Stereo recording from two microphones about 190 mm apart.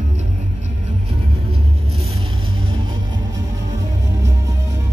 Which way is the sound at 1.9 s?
30° right (ahead or behind).